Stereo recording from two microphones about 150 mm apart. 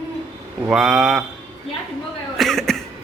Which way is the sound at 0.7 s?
Centre (ahead or behind).